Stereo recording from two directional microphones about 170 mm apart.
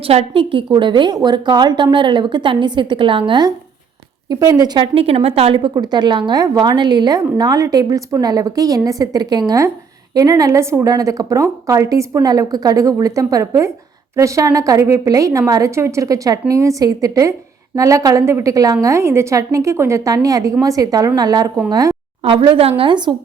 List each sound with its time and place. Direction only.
0.0 s a woman's voice: 35° right (ahead or behind)
22.2 s a woman's voice: 30° right (ahead or behind)